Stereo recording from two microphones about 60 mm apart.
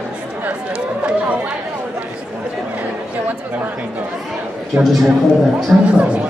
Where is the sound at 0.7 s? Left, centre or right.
Centre.